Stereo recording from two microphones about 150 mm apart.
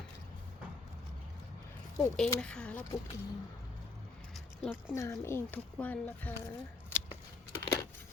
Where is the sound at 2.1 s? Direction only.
5° left (ahead or behind).